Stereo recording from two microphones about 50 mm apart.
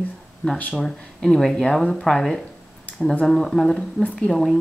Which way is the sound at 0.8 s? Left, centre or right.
Centre.